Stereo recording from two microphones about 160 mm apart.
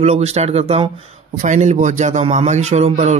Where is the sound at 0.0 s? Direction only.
40° right (ahead or behind).